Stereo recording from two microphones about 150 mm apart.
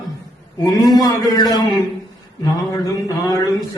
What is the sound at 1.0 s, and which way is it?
A man's voice, 25° left (ahead or behind).